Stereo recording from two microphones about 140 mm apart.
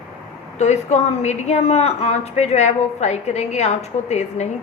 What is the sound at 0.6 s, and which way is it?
A woman's voice, 55° left (ahead or behind).